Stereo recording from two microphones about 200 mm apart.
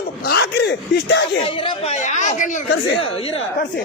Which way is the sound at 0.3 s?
55° left (ahead or behind).